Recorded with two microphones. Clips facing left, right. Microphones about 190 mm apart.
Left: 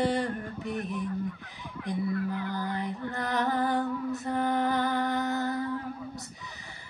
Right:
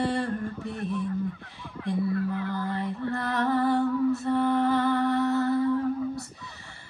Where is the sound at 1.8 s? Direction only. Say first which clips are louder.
Right 3 dB; 35° right (ahead or behind).